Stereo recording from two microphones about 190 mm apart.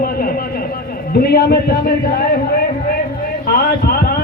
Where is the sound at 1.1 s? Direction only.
55° left (ahead or behind).